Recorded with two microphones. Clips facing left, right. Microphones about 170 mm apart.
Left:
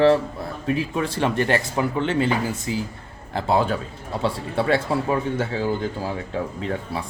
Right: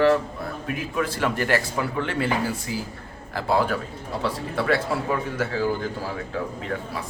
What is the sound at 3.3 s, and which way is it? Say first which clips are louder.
A man's voice: left 2 dB; 25° left (ahead or behind).